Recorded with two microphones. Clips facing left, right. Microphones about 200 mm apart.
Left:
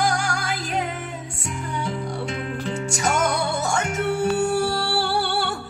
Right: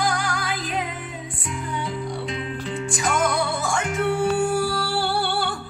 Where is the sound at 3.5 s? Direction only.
40° left (ahead or behind).